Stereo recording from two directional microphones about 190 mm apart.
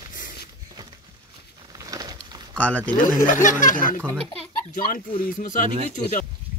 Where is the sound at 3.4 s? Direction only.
45° left (ahead or behind).